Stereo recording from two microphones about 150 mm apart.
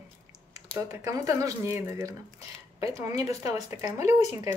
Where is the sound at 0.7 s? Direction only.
20° right (ahead or behind).